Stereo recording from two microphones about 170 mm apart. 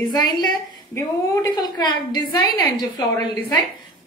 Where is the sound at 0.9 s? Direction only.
25° left (ahead or behind).